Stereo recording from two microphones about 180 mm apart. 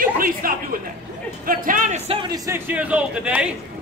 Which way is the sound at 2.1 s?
25° right (ahead or behind).